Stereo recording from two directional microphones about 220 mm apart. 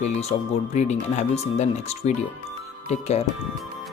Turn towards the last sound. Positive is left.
turn(degrees=30)  # may be behind; listen again after turning